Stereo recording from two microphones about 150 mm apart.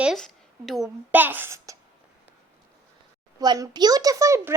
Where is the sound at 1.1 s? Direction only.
10° right (ahead or behind).